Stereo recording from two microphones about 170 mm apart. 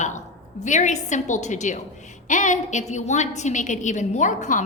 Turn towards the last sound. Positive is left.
turn(degrees=45)  # may be behind; listen again after turning